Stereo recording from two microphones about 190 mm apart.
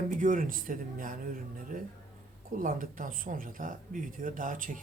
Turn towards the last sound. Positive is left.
turn(degrees=-45)  # may be behind; listen again after turning